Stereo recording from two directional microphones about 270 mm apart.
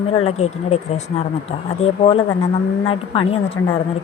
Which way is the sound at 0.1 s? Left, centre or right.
Left.